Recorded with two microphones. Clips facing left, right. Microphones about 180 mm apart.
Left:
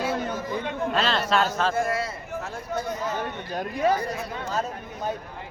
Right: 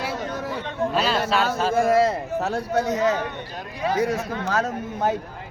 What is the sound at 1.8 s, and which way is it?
Speech, 75° right (ahead or behind).